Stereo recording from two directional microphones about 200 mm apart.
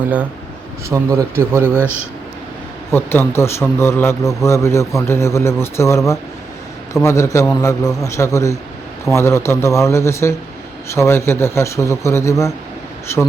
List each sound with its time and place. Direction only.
0.9 s speech: 15° right (ahead or behind)
2.9 s speech: 10° left (ahead or behind)